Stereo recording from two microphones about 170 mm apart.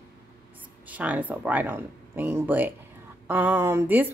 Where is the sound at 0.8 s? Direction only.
10° right (ahead or behind).